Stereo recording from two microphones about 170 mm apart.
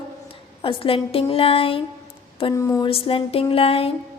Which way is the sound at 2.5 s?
20° left (ahead or behind).